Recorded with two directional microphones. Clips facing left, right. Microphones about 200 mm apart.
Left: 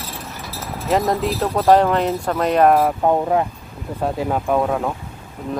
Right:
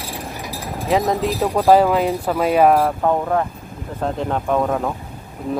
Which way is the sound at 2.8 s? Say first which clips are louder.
Left 1 dB; 15° left (ahead or behind).